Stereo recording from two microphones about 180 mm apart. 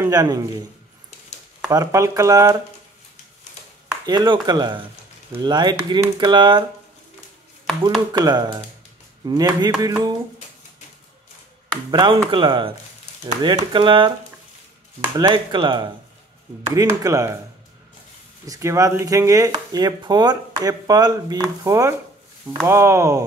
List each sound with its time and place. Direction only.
0.0 s a man's voice: 20° right (ahead or behind)
1.7 s speech: 15° right (ahead or behind)
4.0 s speech: 20° right (ahead or behind)
8.1 s speech: 20° right (ahead or behind)
11.9 s speech: 25° right (ahead or behind)
15.1 s speech: 25° right (ahead or behind)
18.5 s speech: 15° right (ahead or behind)